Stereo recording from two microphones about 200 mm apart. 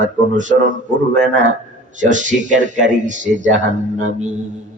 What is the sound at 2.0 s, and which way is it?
Speech, 40° right (ahead or behind).